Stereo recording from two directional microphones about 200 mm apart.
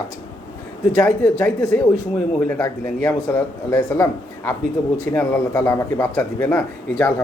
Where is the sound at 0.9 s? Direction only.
15° left (ahead or behind).